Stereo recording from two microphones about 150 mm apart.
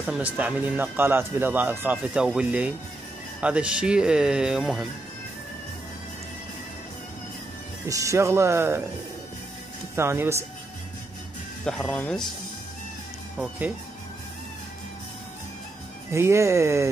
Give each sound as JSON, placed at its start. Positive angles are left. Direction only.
{"t": 0.0, "sound": "speech", "side_deg": -10}
{"t": 7.8, "sound": "speech", "side_deg": -20}
{"t": 9.9, "sound": "speech", "side_deg": -15}
{"t": 11.6, "sound": "speech", "side_deg": 5}
{"t": 16.1, "sound": "speech", "side_deg": -20}